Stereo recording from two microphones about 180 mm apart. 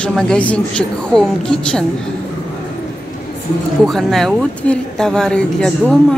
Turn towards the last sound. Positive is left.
turn(degrees=5)  # may be behind; listen again after turning